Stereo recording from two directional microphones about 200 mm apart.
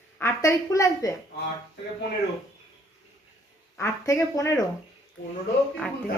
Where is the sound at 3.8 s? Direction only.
15° left (ahead or behind).